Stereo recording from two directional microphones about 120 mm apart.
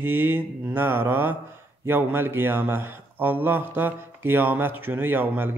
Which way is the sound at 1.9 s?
15° right (ahead or behind).